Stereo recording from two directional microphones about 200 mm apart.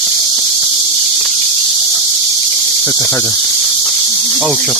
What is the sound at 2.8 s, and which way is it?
Cricket, 15° left (ahead or behind).